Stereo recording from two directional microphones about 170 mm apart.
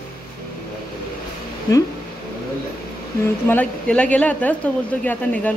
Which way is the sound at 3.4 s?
10° left (ahead or behind).